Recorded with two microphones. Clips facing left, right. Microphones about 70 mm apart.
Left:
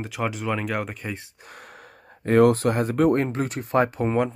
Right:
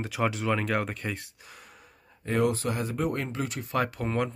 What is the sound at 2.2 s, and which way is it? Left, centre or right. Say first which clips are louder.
Speech: left 9 dB; left.